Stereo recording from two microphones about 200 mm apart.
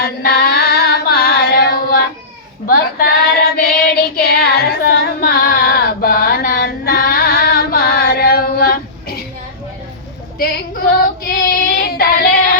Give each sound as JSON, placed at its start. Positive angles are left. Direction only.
{"t": 0.0, "sound": "music", "side_deg": 50}
{"t": 2.6, "sound": "child singing", "side_deg": 50}
{"t": 10.3, "sound": "child singing", "side_deg": 50}